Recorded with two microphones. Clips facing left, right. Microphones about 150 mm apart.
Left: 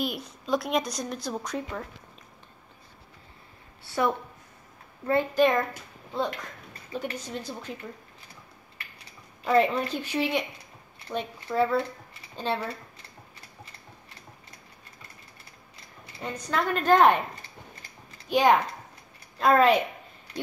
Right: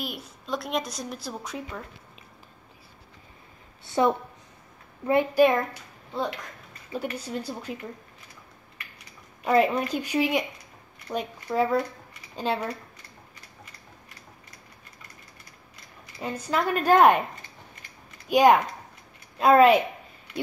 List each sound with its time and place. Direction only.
0.0 s a woman's voice: centre (ahead or behind)
3.8 s a woman's voice: 20° right (ahead or behind)
7.2 s a woman's voice: 10° right (ahead or behind)
9.4 s a woman's voice: 10° right (ahead or behind)
16.2 s a woman's voice: 10° right (ahead or behind)
18.3 s a woman's voice: 10° right (ahead or behind)